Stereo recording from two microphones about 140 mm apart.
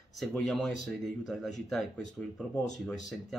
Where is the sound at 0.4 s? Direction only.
Centre (ahead or behind).